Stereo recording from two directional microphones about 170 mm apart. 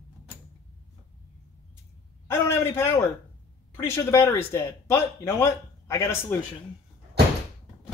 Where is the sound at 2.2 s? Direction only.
15° left (ahead or behind).